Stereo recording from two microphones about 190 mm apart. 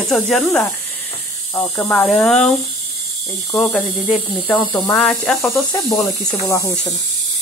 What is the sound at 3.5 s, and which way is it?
Speech, 5° left (ahead or behind).